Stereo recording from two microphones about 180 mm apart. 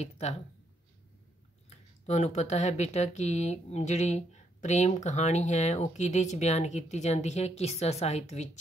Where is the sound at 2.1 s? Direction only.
40° left (ahead or behind).